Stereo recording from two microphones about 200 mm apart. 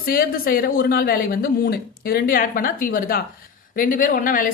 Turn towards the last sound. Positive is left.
turn(degrees=45)  # may be behind; listen again after turning